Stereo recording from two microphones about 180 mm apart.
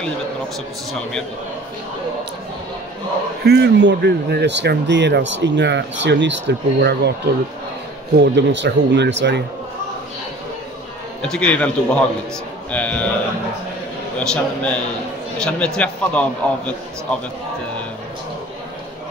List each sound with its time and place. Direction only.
3.4 s speech: 70° right (ahead or behind)
8.2 s speech: 75° right (ahead or behind)
11.2 s a man's voice: 5° left (ahead or behind)
14.1 s a man's voice: 5° left (ahead or behind)